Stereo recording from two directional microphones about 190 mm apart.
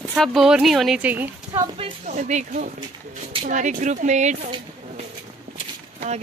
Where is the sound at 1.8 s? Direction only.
40° right (ahead or behind).